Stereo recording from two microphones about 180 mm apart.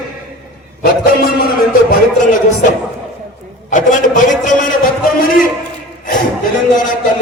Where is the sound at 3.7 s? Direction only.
45° left (ahead or behind).